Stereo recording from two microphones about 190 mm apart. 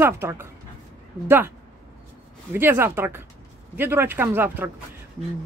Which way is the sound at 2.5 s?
10° right (ahead or behind).